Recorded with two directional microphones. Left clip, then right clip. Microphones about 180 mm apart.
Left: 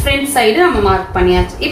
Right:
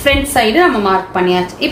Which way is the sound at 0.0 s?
50° right (ahead or behind).